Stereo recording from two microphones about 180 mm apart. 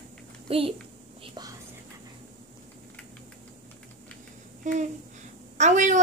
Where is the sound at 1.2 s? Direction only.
25° right (ahead or behind).